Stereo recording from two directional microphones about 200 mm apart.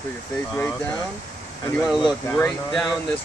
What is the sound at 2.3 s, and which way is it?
Speech, 10° left (ahead or behind).